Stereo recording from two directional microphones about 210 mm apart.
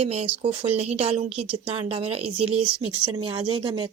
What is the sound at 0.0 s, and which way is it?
A woman's voice, 30° right (ahead or behind).